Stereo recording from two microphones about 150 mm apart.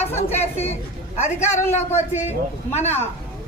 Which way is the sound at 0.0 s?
45° left (ahead or behind).